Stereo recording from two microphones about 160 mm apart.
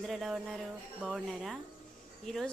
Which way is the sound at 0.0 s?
Centre (ahead or behind).